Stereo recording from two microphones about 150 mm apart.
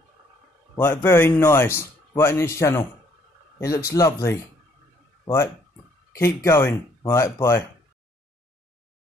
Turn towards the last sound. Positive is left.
turn(degrees=20)  # may be behind; listen again after turning